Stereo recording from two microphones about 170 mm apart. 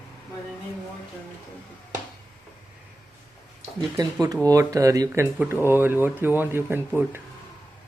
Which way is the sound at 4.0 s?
25° right (ahead or behind).